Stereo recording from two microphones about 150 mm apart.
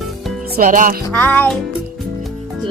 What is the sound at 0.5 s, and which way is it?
Speech, 65° right (ahead or behind).